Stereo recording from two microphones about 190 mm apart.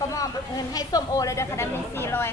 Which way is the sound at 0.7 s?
20° left (ahead or behind).